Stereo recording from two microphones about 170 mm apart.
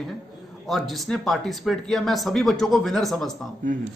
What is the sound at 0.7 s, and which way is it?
Speech, centre (ahead or behind).